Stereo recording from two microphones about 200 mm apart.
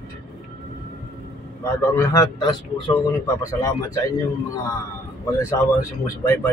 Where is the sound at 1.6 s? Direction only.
15° left (ahead or behind).